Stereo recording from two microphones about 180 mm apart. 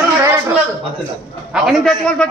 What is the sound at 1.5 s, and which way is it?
Speech, centre (ahead or behind).